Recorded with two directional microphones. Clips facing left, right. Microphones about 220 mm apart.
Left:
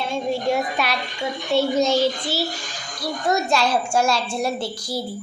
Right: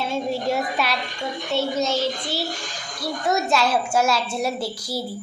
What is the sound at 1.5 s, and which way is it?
Speech, 15° left (ahead or behind).